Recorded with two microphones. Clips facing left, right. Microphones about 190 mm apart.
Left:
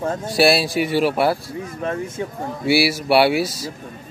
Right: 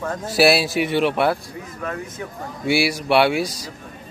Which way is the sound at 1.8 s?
25° left (ahead or behind).